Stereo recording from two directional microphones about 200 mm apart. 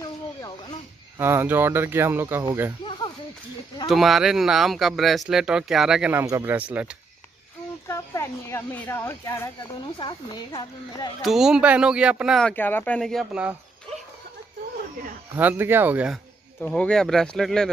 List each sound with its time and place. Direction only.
0.0 s snake: 20° left (ahead or behind)
1.1 s speech: 10° right (ahead or behind)
2.8 s snake: 25° left (ahead or behind)
3.9 s speech: centre (ahead or behind)
7.9 s speech: 15° left (ahead or behind)
11.2 s speech: centre (ahead or behind)
15.3 s speech: 10° right (ahead or behind)
16.6 s speech: 5° left (ahead or behind)